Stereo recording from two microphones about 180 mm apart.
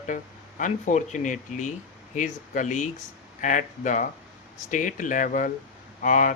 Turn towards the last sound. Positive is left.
turn(degrees=45)  # may be behind; listen again after turning